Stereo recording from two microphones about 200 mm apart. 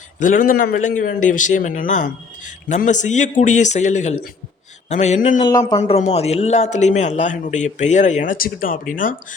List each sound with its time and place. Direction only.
0.2 s a man's voice: 40° left (ahead or behind)
5.4 s speech: 20° left (ahead or behind)
5.7 s a man's voice: 35° left (ahead or behind)